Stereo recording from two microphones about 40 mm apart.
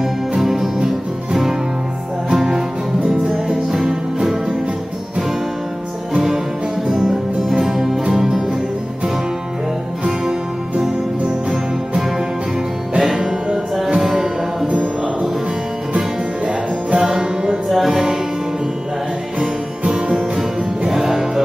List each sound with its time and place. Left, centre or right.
0.4 s music: centre
2.3 s music: centre
6.1 s music: centre
13.0 s music: centre
16.9 s music: centre
17.6 s music: centre
19.9 s music: centre